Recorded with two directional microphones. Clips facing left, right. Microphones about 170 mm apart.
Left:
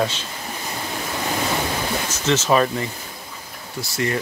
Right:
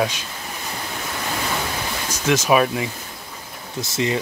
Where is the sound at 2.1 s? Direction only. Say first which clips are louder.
Right 2 dB; 10° right (ahead or behind).